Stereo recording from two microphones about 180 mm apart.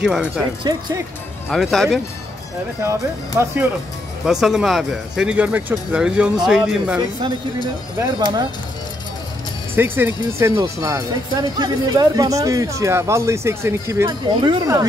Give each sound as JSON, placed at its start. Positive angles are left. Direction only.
{"t": 0.0, "sound": "speech", "side_deg": -5}
{"t": 1.5, "sound": "speech", "side_deg": 0}
{"t": 2.8, "sound": "speech", "side_deg": -15}
{"t": 4.3, "sound": "speech", "side_deg": 0}
{"t": 7.0, "sound": "speech", "side_deg": -25}
{"t": 9.8, "sound": "speech", "side_deg": -10}